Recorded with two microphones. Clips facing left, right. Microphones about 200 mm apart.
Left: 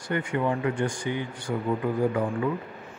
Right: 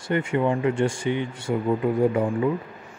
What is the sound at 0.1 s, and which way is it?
Speech, 25° right (ahead or behind).